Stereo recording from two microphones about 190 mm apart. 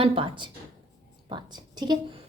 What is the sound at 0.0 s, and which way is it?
A child's voice, 30° right (ahead or behind).